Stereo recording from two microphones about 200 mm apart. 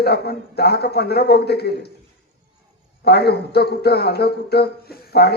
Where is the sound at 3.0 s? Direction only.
55° left (ahead or behind).